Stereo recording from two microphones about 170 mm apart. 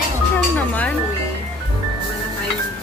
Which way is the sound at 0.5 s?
10° left (ahead or behind).